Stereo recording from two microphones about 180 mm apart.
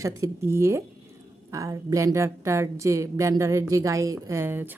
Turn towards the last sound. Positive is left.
turn(degrees=-10)  # may be behind; listen again after turning